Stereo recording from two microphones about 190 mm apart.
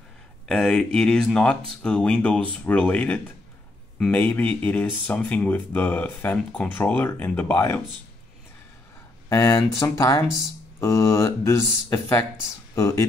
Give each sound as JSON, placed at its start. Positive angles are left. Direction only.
{"t": 0.5, "sound": "speech", "side_deg": 5}
{"t": 9.3, "sound": "speech", "side_deg": 15}